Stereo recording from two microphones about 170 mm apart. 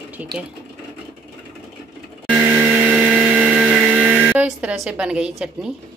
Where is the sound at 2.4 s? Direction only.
5° right (ahead or behind).